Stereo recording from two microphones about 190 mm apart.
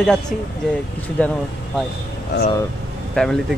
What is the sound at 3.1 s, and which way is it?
Speech, 5° left (ahead or behind).